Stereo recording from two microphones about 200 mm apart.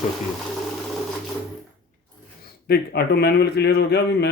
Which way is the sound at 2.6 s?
55° left (ahead or behind).